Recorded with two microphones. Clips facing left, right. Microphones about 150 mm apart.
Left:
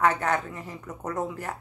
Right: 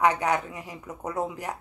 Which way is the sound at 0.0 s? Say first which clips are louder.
Right 1 dB; 15° right (ahead or behind).